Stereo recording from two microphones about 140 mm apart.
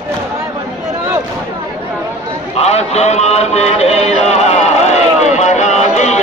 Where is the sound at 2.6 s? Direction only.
50° left (ahead or behind).